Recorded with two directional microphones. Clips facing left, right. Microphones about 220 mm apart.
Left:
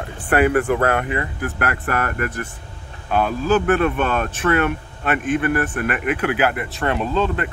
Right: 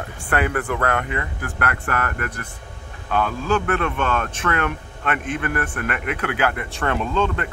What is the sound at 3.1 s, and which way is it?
Speech, 20° left (ahead or behind).